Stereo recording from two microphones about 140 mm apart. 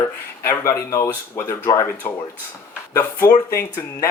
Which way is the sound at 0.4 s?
20° left (ahead or behind).